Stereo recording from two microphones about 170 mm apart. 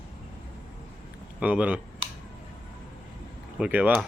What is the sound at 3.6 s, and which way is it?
Speech, 10° right (ahead or behind).